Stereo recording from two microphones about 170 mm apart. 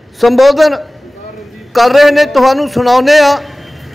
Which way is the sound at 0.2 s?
Centre (ahead or behind).